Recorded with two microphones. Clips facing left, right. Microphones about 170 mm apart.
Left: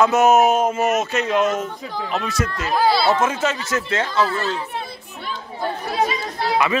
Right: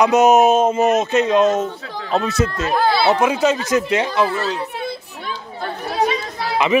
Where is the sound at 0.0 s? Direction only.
20° right (ahead or behind).